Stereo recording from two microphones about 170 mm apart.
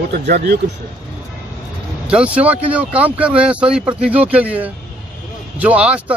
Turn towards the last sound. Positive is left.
turn(degrees=-10)  # may be behind; listen again after turning